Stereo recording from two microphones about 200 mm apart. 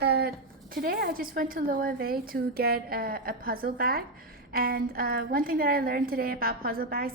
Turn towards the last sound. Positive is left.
turn(degrees=-45)  # may be behind; listen again after turning